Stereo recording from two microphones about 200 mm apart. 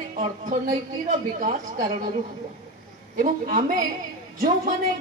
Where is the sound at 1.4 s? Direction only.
40° right (ahead or behind).